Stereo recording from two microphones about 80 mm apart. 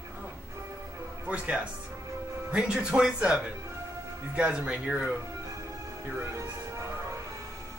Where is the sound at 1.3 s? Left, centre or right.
Centre.